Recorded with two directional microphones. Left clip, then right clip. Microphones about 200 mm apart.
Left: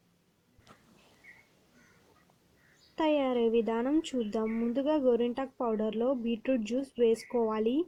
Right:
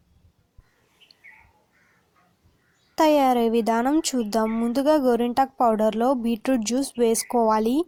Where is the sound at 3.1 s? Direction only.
30° right (ahead or behind).